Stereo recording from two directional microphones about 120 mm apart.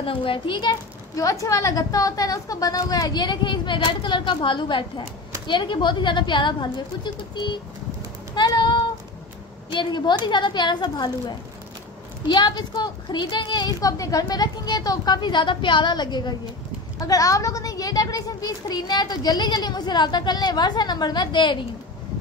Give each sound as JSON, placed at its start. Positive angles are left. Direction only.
{"t": 0.0, "sound": "a child's voice", "side_deg": 45}
{"t": 1.1, "sound": "a child's voice", "side_deg": 30}
{"t": 8.4, "sound": "child singing", "side_deg": 35}
{"t": 9.7, "sound": "a child's voice", "side_deg": 40}